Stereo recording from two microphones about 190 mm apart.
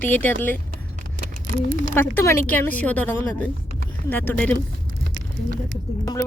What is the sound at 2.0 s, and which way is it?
Speech, 10° left (ahead or behind).